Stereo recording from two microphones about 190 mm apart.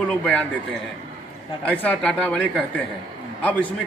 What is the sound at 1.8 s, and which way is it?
Speech, 5° left (ahead or behind).